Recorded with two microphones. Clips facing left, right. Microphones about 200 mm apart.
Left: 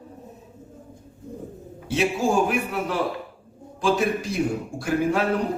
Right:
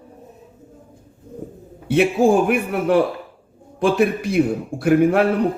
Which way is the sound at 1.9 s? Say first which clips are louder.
Right 7 dB; 55° right (ahead or behind).